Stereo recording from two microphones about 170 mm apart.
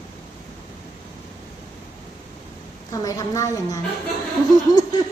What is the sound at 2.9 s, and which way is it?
Speech, 20° left (ahead or behind).